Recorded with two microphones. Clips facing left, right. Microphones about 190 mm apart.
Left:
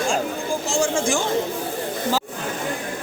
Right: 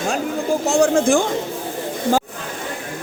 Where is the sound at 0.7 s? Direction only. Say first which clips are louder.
Right 7 dB; 60° right (ahead or behind).